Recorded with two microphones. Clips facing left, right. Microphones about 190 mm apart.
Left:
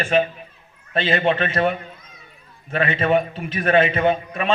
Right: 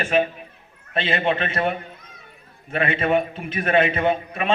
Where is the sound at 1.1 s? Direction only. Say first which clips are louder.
Left 3 dB; 40° left (ahead or behind).